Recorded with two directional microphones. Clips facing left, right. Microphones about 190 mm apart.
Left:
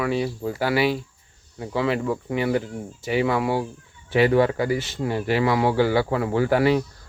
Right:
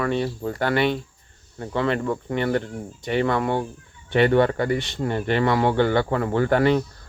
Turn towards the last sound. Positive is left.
turn(degrees=5)  # may be behind; listen again after turning